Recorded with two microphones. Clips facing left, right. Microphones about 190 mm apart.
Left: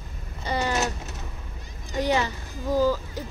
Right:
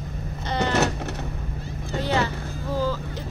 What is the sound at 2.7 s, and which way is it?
Speech, 10° left (ahead or behind).